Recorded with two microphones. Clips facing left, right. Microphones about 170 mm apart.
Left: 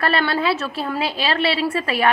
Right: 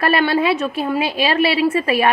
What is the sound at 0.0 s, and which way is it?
A woman's voice, 20° right (ahead or behind).